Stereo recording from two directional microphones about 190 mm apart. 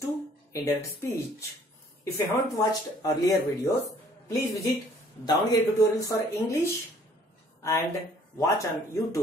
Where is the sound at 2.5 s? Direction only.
20° left (ahead or behind).